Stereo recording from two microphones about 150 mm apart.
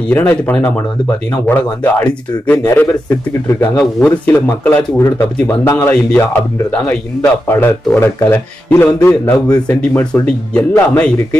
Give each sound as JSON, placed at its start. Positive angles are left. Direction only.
{"t": 0.1, "sound": "speech", "side_deg": 15}
{"t": 3.7, "sound": "speech", "side_deg": 5}
{"t": 4.3, "sound": "speech", "side_deg": 15}
{"t": 6.7, "sound": "speech", "side_deg": 10}